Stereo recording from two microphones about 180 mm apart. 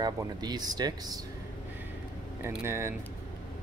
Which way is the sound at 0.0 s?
25° right (ahead or behind).